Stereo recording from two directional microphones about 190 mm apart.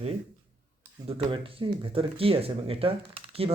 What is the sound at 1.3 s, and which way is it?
Speech, 25° right (ahead or behind).